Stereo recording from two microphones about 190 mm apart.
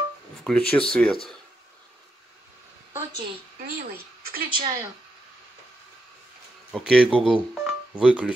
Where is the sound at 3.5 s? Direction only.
50° right (ahead or behind).